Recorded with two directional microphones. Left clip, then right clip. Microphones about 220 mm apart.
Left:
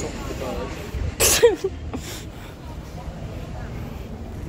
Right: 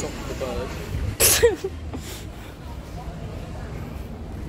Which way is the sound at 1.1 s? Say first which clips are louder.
Left 2 dB; 5° left (ahead or behind).